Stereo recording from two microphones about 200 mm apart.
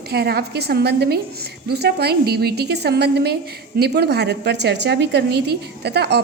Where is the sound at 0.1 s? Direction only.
50° right (ahead or behind).